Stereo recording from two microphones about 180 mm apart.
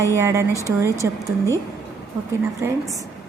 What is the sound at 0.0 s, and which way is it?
A woman's voice, 15° right (ahead or behind).